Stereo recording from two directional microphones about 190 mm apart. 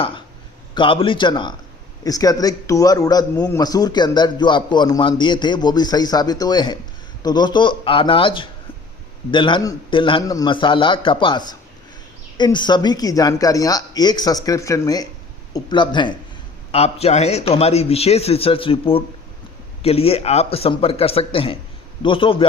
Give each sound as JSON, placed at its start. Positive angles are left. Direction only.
{"t": 0.7, "sound": "a man's voice", "side_deg": 25}